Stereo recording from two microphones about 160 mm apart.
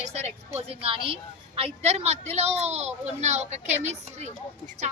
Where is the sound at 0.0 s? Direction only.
40° right (ahead or behind).